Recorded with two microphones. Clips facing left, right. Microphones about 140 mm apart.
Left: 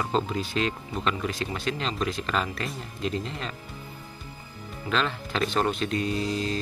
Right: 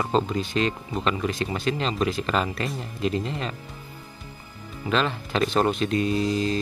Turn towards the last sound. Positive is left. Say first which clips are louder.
# right 4 dB
turn(degrees=0)  # may be behind; listen again after turning